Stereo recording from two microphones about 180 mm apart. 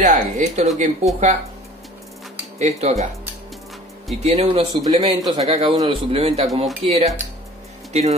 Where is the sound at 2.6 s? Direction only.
35° right (ahead or behind).